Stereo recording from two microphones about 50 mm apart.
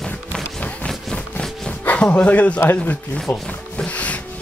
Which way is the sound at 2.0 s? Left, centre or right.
Left.